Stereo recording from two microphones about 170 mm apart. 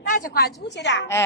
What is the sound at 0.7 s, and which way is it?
Speech, 90° left.